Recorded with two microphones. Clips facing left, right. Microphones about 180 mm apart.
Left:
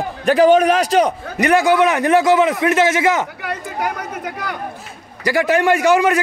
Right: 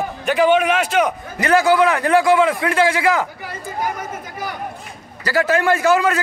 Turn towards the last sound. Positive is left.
turn(degrees=20)  # may be behind; listen again after turning